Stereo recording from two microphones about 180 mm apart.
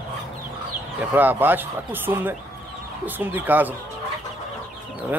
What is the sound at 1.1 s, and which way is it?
Speech, 10° right (ahead or behind).